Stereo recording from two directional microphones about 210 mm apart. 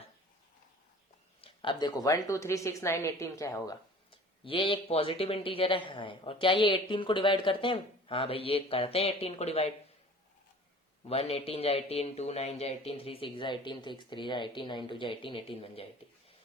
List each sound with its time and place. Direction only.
1.4 s speech: 25° left (ahead or behind)
11.1 s speech: 30° left (ahead or behind)